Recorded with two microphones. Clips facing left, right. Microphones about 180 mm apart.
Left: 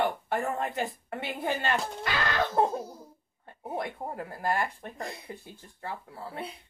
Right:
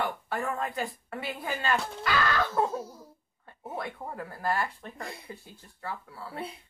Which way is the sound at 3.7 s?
25° left (ahead or behind).